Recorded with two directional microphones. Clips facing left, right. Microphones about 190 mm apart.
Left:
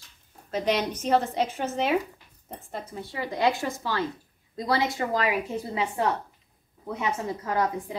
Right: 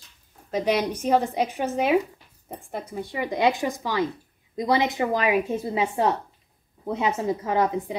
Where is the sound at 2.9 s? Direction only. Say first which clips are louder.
Right 5 dB; 15° right (ahead or behind).